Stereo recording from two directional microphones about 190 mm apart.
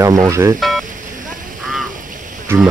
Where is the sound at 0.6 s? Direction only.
Centre (ahead or behind).